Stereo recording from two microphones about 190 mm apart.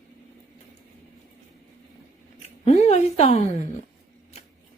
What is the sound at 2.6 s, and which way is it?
Speech, 35° left (ahead or behind).